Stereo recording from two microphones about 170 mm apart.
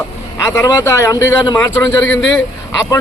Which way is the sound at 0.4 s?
20° left (ahead or behind).